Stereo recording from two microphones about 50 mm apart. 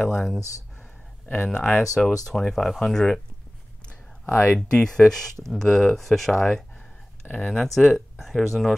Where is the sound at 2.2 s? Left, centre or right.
Centre.